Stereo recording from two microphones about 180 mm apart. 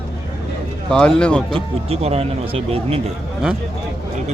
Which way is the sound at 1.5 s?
30° right (ahead or behind).